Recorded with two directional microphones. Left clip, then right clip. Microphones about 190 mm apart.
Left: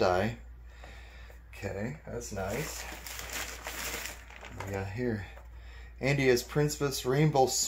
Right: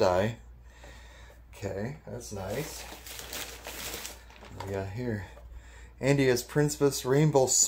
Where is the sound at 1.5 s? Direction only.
50° right (ahead or behind).